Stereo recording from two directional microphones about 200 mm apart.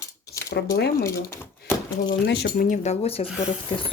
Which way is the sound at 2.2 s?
55° left (ahead or behind).